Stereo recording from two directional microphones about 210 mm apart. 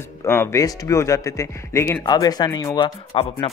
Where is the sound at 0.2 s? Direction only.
10° left (ahead or behind).